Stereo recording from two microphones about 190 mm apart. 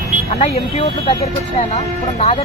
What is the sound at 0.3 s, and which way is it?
Speech, 35° left (ahead or behind).